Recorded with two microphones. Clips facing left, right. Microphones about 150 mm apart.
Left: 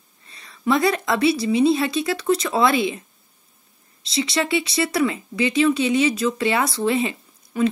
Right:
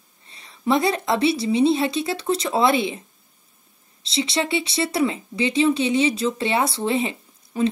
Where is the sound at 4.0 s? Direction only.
25° right (ahead or behind).